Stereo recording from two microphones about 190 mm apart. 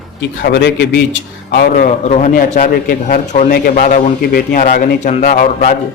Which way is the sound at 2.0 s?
35° left (ahead or behind).